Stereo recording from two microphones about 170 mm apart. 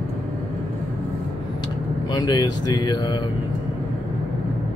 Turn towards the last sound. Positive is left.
turn(degrees=25)  # may be behind; listen again after turning